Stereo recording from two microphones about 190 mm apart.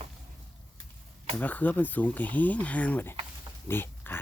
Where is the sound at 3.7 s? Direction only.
10° left (ahead or behind).